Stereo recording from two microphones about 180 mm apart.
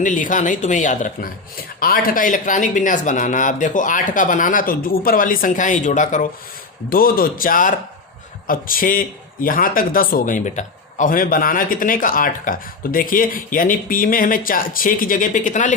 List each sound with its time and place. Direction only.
0.0 s a man's voice: 45° left (ahead or behind)
6.9 s a man's voice: 55° left (ahead or behind)